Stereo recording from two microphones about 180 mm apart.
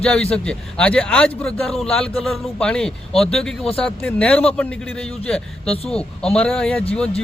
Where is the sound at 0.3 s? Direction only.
5° left (ahead or behind).